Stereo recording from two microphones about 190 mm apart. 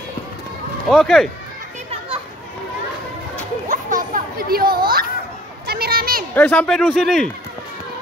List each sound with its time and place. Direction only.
0.8 s speech: centre (ahead or behind)
3.6 s children playing: 45° right (ahead or behind)
6.3 s speech: 10° left (ahead or behind)